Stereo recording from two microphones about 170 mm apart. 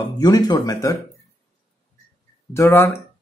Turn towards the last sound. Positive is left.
turn(degrees=15)  # may be behind; listen again after turning